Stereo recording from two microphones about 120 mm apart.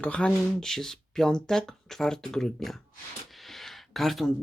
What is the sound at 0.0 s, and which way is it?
Speech, 10° left (ahead or behind).